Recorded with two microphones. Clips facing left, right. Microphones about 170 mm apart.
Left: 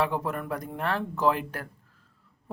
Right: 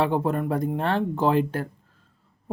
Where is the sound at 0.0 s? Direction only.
30° right (ahead or behind).